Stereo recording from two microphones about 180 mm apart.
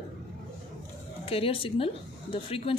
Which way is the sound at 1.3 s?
30° left (ahead or behind).